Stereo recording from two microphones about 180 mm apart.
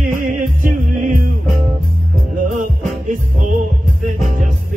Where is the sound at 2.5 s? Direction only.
45° right (ahead or behind).